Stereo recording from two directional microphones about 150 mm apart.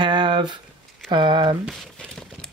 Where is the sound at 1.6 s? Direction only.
Centre (ahead or behind).